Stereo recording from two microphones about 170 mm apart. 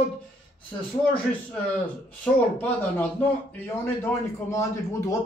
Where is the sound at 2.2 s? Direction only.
10° left (ahead or behind).